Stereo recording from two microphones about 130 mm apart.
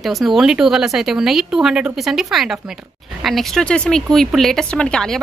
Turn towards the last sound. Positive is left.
turn(degrees=5)  # may be behind; listen again after turning